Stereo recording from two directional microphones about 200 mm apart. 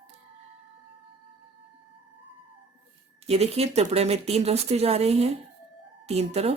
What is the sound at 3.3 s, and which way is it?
Speech, 30° right (ahead or behind).